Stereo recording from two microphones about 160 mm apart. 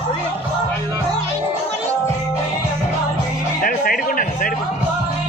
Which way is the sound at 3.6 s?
60° left (ahead or behind).